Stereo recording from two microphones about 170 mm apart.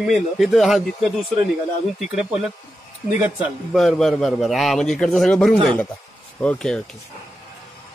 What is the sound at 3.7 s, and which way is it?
A man's voice, centre (ahead or behind).